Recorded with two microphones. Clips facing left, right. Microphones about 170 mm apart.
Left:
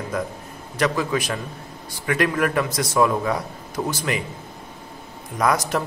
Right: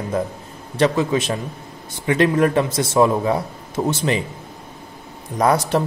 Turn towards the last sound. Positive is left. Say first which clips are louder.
# right 4 dB
turn(degrees=-30)  # may be behind; listen again after turning